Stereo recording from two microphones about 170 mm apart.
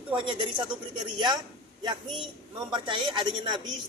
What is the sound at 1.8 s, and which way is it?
Speech, 25° right (ahead or behind).